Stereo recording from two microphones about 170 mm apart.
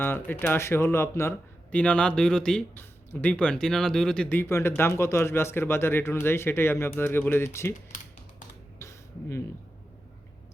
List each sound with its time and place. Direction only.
0.0 s speech: 15° left (ahead or behind)
7.9 s typing: 50° left (ahead or behind)
8.8 s a sound: 15° left (ahead or behind)